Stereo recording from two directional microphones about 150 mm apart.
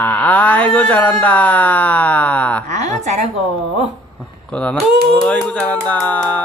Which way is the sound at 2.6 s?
50° right (ahead or behind).